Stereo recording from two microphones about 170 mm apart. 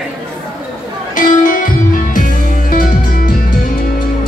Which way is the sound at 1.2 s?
55° left (ahead or behind).